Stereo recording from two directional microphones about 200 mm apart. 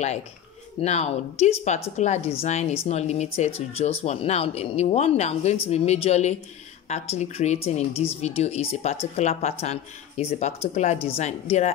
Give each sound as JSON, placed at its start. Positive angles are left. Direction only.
{"t": 0.7, "sound": "speech", "side_deg": 35}